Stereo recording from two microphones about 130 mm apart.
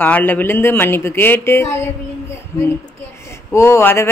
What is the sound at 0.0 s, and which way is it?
Speech, 15° left (ahead or behind).